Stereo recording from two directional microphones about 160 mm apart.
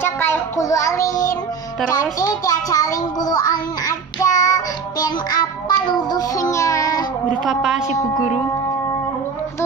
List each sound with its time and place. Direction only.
0.0 s child singing: 15° left (ahead or behind)
1.9 s a child's voice: 20° left (ahead or behind)
5.8 s child singing: 25° left (ahead or behind)
7.4 s a woman's voice: 5° right (ahead or behind)